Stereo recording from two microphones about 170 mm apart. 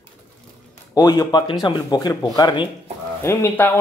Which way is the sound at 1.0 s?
25° left (ahead or behind).